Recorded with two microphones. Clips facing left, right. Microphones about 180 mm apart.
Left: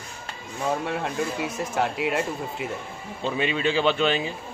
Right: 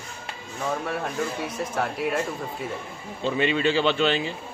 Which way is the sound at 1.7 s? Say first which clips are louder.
Left 1 dB; 20° left (ahead or behind).